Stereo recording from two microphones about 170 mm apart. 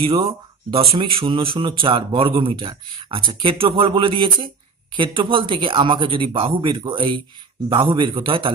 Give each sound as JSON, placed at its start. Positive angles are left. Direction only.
{"t": 0.0, "sound": "speech", "side_deg": -30}